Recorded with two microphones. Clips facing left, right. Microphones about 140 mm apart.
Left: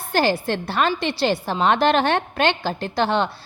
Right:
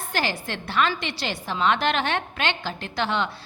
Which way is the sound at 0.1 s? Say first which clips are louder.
Left 8 dB; 35° left (ahead or behind).